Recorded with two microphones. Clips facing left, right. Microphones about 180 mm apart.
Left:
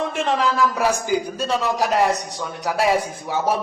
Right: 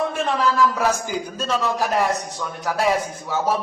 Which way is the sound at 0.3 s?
15° left (ahead or behind).